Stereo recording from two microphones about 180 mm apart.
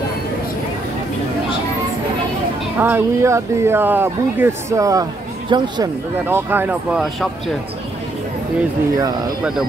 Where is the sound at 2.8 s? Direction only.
15° right (ahead or behind).